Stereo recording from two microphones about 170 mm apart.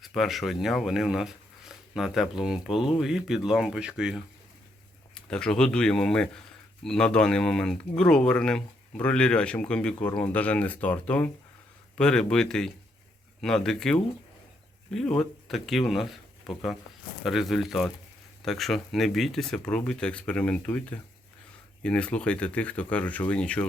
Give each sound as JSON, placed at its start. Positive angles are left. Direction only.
{"t": 0.0, "sound": "speech", "side_deg": 0}